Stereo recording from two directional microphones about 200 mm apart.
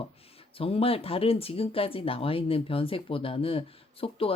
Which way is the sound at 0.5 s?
30° left (ahead or behind).